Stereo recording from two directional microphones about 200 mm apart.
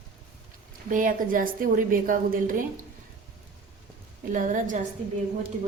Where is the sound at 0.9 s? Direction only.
40° right (ahead or behind).